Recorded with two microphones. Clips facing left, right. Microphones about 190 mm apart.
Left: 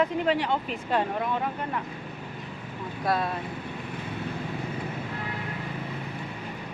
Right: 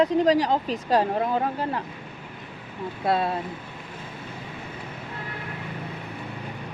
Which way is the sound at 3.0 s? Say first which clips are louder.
Right 3 dB; 25° right (ahead or behind).